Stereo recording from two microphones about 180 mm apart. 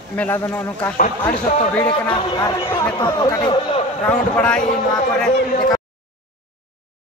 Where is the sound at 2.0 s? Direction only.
20° left (ahead or behind).